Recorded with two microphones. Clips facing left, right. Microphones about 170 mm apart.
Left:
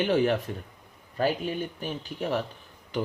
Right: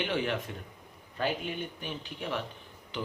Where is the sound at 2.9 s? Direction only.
45° left (ahead or behind).